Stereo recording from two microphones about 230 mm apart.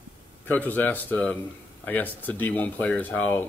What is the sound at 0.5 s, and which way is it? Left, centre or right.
A man's voice, centre.